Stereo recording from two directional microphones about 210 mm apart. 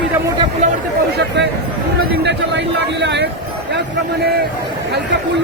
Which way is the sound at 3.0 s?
55° right (ahead or behind).